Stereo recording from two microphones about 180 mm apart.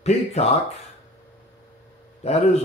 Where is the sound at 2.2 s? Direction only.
35° left (ahead or behind).